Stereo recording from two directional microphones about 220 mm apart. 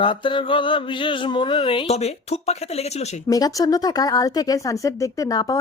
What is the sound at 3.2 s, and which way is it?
Speech, 15° left (ahead or behind).